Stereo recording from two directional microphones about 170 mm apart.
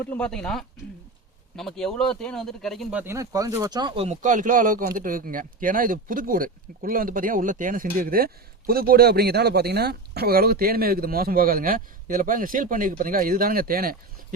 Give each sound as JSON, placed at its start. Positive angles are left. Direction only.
{"t": 0.0, "sound": "speech", "side_deg": 10}
{"t": 3.0, "sound": "speech", "side_deg": -15}